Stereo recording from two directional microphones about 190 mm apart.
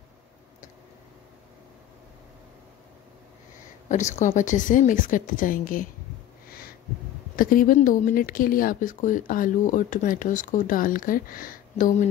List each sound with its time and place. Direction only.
3.9 s speech: 40° left (ahead or behind)
7.3 s speech: 45° left (ahead or behind)